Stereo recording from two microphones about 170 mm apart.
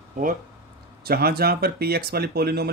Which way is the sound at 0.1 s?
50° right (ahead or behind).